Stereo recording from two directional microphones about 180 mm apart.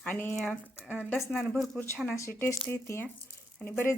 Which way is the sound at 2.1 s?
15° left (ahead or behind).